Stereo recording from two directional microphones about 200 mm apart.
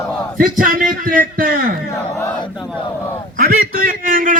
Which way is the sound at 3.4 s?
45° right (ahead or behind).